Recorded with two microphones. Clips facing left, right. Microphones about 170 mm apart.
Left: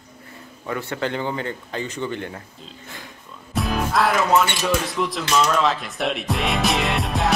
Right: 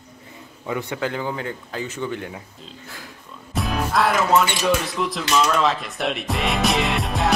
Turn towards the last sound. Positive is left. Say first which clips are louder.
# even
turn(degrees=0)  # may be behind; listen again after turning